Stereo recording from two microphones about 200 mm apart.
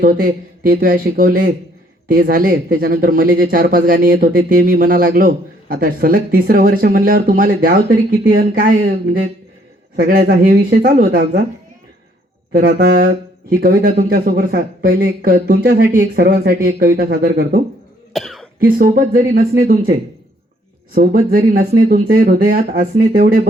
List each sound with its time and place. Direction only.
0.0 s speech: 45° right (ahead or behind)
9.9 s speech: 45° right (ahead or behind)
12.5 s speech: 45° right (ahead or behind)
18.1 s cough: centre (ahead or behind)
18.6 s speech: 45° right (ahead or behind)